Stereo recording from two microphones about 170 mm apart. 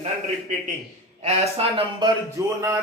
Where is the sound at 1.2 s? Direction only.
40° right (ahead or behind).